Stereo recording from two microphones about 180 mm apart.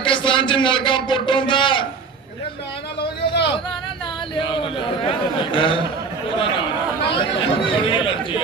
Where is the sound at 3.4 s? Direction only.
25° left (ahead or behind).